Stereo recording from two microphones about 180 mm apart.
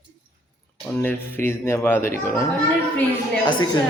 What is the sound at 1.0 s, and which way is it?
Speech, 10° left (ahead or behind).